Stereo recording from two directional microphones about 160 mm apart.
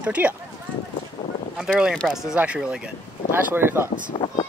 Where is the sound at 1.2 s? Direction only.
40° left (ahead or behind).